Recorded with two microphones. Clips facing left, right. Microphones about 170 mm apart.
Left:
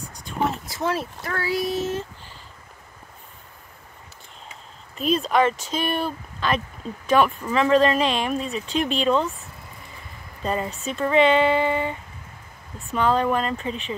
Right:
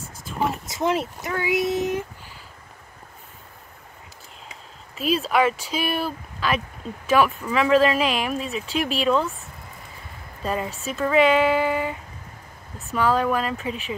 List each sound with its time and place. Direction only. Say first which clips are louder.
0.2 s a sound: left 1 dB; 5° right (ahead or behind)
0.7 s speech: right 2 dB; 20° right (ahead or behind)
4.9 s speech: left 1 dB; 5° right (ahead or behind)
10.4 s speech: left 1 dB; 5° right (ahead or behind)